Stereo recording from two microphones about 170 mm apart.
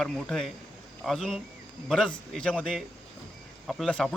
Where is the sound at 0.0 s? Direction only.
Centre (ahead or behind).